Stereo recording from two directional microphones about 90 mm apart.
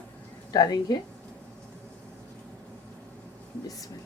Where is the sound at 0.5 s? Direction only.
45° left (ahead or behind).